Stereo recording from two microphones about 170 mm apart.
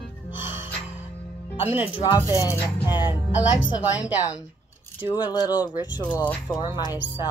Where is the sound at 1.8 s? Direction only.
30° left (ahead or behind).